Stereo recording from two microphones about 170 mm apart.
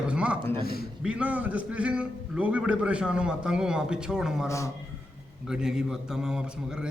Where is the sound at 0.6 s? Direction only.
65° left (ahead or behind).